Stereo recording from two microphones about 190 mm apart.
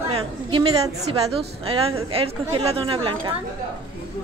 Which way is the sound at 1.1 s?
30° right (ahead or behind).